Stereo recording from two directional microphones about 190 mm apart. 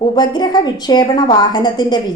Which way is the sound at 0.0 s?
25° left (ahead or behind).